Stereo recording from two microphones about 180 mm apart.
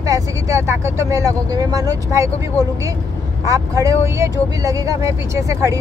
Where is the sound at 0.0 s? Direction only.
20° right (ahead or behind).